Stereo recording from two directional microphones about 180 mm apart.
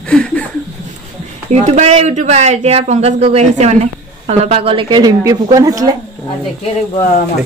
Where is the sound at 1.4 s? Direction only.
40° right (ahead or behind); by 5.9 s 20° right (ahead or behind).